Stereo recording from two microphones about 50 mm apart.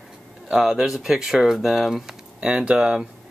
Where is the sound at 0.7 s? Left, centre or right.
Centre.